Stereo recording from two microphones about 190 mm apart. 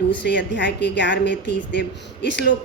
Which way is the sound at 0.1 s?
70° left (ahead or behind).